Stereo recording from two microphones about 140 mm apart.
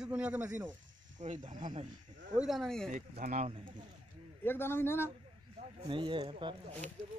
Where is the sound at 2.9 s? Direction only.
75° right (ahead or behind).